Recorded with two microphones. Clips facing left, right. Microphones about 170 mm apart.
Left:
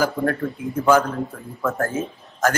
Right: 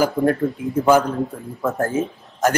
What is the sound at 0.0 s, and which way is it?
Speech, 20° right (ahead or behind).